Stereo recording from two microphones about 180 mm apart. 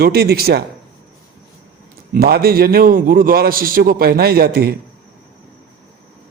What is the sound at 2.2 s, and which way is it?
A man's voice, 60° right (ahead or behind).